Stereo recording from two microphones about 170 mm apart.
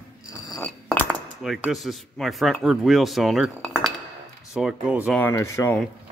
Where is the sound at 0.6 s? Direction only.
10° left (ahead or behind).